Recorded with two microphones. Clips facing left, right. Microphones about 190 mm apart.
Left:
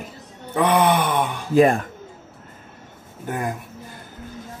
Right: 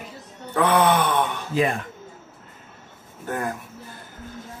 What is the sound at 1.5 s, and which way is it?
Speech, 45° left (ahead or behind).